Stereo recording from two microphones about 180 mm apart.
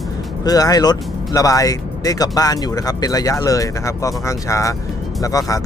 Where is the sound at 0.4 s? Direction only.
20° left (ahead or behind).